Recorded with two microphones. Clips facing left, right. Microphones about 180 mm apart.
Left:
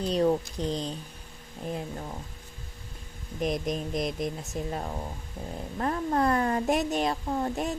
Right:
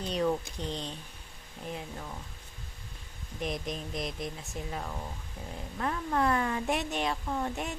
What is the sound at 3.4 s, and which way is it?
Speech, 45° left (ahead or behind).